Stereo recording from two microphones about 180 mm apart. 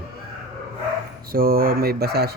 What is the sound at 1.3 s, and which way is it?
Speech, 55° right (ahead or behind).